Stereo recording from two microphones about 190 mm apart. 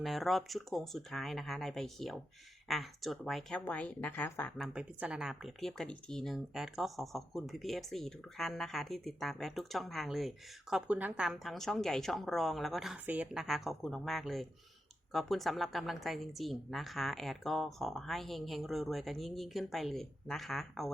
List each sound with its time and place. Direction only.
0.0 s speech: centre (ahead or behind)